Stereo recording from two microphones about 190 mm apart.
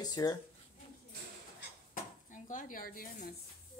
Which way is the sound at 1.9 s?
45° left (ahead or behind).